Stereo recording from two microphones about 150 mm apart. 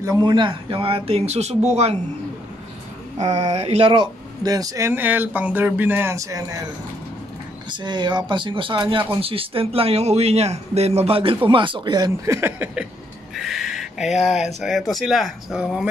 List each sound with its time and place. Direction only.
0.0 s speech: 25° right (ahead or behind); by 2.0 s 45° right (ahead or behind)
3.2 s speech: 45° right (ahead or behind); by 6.6 s 20° right (ahead or behind)
7.7 s speech: 30° right (ahead or behind)
12.4 s a sound: 15° right (ahead or behind)
13.3 s speech: centre (ahead or behind)